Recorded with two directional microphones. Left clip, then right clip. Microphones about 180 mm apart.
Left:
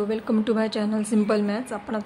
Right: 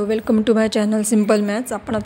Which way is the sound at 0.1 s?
35° right (ahead or behind).